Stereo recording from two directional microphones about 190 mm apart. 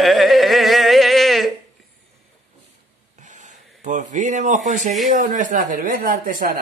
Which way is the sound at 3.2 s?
40° right (ahead or behind).